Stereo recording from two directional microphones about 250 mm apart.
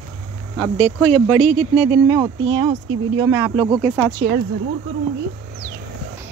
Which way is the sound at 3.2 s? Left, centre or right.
Centre.